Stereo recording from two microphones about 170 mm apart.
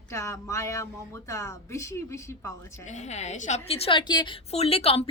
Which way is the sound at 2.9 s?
45° left (ahead or behind).